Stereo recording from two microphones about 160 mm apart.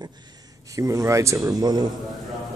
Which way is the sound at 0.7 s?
20° right (ahead or behind).